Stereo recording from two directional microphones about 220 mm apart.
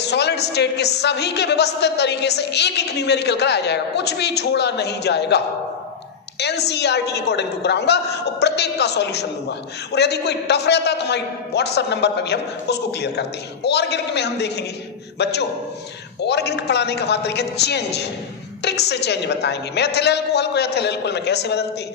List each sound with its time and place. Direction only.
0.0 s a woman's voice: 50° left (ahead or behind)